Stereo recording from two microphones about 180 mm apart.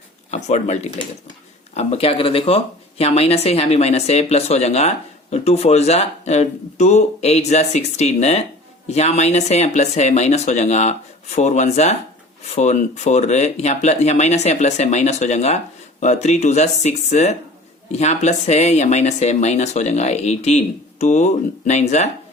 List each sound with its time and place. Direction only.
0.3 s speech: 40° left (ahead or behind)